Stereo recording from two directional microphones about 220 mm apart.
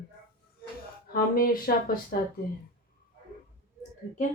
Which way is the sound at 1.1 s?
40° left (ahead or behind).